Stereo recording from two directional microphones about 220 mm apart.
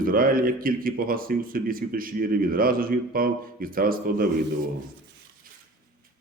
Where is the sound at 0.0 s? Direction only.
40° right (ahead or behind).